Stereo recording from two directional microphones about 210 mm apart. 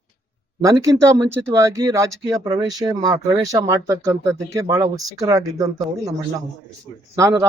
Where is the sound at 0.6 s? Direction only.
15° right (ahead or behind).